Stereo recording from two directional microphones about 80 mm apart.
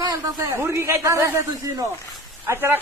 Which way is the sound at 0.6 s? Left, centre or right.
Right.